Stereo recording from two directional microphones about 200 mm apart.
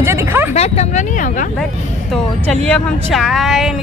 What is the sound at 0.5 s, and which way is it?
Speech, 30° left (ahead or behind).